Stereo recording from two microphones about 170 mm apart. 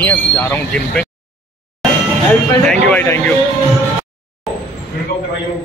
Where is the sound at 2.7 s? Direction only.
10° left (ahead or behind).